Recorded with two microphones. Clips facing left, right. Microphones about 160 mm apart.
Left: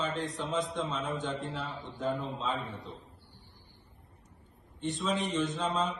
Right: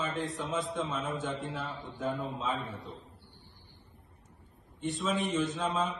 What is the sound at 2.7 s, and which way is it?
Speech, 20° left (ahead or behind).